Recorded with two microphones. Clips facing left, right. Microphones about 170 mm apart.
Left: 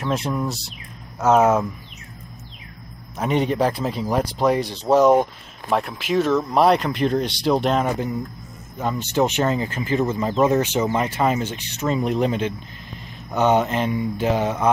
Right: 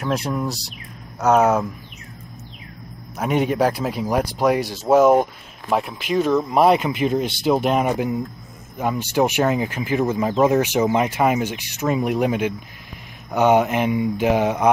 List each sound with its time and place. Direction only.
0.0 s speech: centre (ahead or behind)
3.2 s speech: 5° right (ahead or behind)